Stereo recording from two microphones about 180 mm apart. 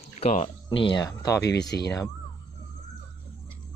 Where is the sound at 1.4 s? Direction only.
70° left (ahead or behind).